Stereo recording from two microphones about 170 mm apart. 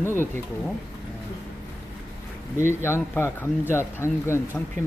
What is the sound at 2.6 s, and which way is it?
Speech, 15° left (ahead or behind).